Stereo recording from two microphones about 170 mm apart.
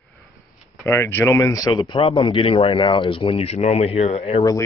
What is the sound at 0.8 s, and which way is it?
A man's voice, 15° left (ahead or behind).